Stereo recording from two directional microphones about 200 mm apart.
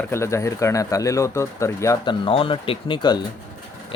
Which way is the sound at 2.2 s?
25° left (ahead or behind).